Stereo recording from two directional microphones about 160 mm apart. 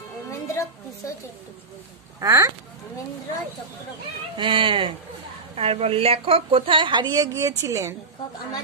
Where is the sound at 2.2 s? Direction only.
20° right (ahead or behind).